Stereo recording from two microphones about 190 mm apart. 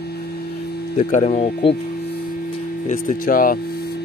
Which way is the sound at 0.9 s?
40° left (ahead or behind).